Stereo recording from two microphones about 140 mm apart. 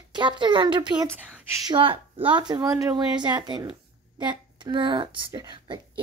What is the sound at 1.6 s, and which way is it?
A woman's voice, 40° right (ahead or behind).